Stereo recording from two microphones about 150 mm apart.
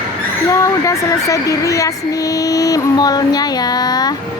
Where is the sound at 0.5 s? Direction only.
20° left (ahead or behind).